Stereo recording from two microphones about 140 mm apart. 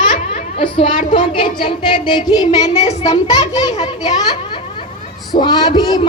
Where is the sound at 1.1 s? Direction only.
35° left (ahead or behind).